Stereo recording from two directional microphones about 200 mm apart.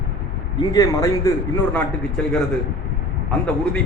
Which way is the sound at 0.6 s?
15° left (ahead or behind).